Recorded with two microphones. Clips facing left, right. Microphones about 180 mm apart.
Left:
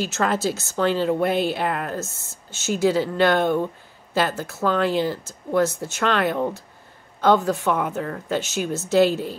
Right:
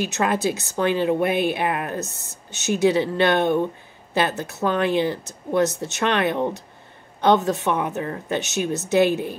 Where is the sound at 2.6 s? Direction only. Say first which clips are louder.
Right 1 dB; 20° right (ahead or behind).